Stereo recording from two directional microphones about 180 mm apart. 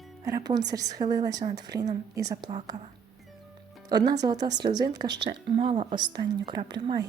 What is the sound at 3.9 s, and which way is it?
A woman's voice, 20° right (ahead or behind).